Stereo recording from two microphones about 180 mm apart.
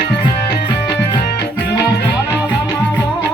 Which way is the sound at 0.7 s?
20° left (ahead or behind).